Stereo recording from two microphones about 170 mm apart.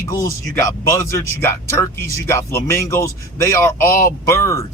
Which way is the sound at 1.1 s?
15° left (ahead or behind).